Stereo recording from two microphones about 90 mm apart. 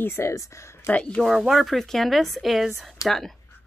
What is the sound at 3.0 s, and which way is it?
Speech, 40° left (ahead or behind).